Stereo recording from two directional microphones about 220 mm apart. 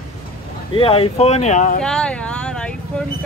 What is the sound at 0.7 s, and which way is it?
Speech, 25° left (ahead or behind).